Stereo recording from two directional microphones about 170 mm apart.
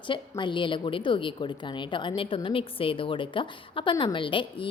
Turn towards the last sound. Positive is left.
turn(degrees=30)  # may be behind; listen again after turning